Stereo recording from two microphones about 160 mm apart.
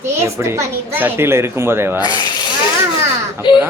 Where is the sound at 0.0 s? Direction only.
15° right (ahead or behind).